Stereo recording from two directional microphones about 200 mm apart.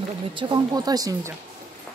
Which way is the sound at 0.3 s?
25° right (ahead or behind).